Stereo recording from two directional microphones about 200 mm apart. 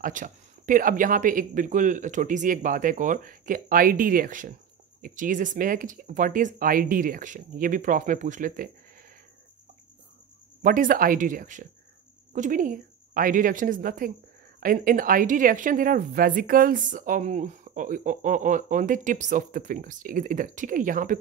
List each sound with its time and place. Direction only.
0.0 s speech: 40° right (ahead or behind)
10.6 s a woman's voice: 45° right (ahead or behind)